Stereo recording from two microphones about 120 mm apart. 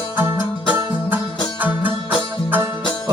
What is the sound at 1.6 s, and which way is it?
Music, 15° right (ahead or behind).